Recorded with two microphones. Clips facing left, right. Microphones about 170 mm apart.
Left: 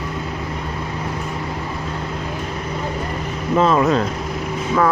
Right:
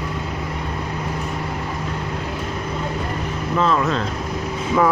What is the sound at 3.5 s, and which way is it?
Vehicle, 20° left (ahead or behind).